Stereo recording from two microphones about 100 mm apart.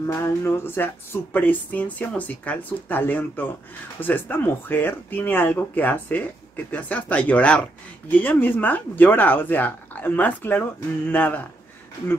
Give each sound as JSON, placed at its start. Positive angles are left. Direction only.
{"t": 0.0, "sound": "speech", "side_deg": 30}